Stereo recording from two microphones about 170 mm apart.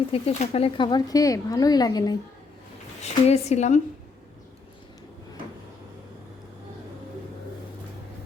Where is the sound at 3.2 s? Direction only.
40° left (ahead or behind).